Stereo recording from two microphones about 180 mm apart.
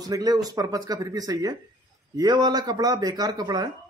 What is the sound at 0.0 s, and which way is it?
A man's voice, 20° right (ahead or behind).